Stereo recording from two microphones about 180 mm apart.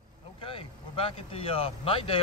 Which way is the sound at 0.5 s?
30° left (ahead or behind).